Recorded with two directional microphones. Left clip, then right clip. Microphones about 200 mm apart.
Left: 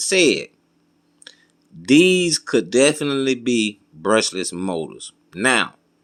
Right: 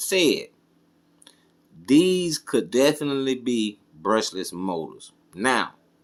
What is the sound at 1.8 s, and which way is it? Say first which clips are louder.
Speech: left 5 dB; 30° left (ahead or behind).